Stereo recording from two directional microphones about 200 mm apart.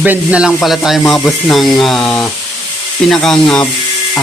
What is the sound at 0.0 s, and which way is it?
Speech, 5° right (ahead or behind).